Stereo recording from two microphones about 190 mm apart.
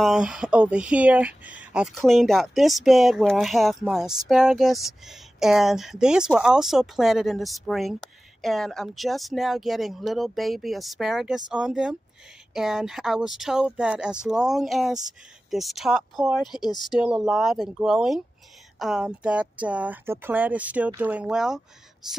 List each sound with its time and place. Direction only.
0.0 s speech: 5° right (ahead or behind)